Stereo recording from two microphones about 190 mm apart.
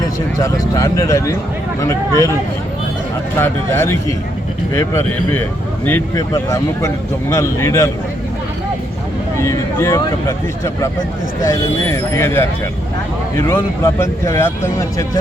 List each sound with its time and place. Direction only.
0.3 s speech: 15° left (ahead or behind)
3.3 s speech: 15° left (ahead or behind)
9.4 s speech: 15° left (ahead or behind)
13.5 s speech: 15° left (ahead or behind)